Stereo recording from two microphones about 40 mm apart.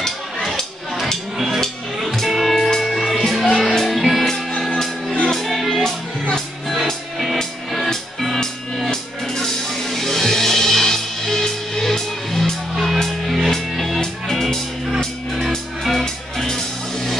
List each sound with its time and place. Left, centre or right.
2.2 s music: centre
2.5 s music: centre
4.3 s music: left
5.3 s music: centre
15.8 s music: centre